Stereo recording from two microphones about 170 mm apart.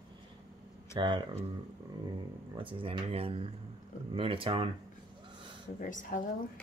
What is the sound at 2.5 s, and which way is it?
Speech, 30° right (ahead or behind).